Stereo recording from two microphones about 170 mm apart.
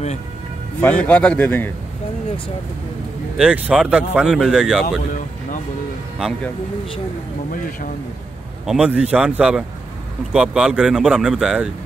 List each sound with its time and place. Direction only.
0.7 s a man's voice: 10° left (ahead or behind)
3.3 s speech: 5° right (ahead or behind)
4.8 s a sound: 50° left (ahead or behind)
6.1 s speech: centre (ahead or behind)
8.6 s a man's voice: 5° right (ahead or behind)